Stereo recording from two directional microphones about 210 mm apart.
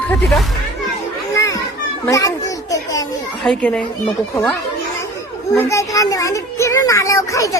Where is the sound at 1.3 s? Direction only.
15° left (ahead or behind).